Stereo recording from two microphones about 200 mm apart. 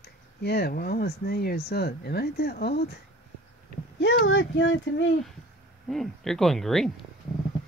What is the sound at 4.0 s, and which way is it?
Speech, 65° left (ahead or behind).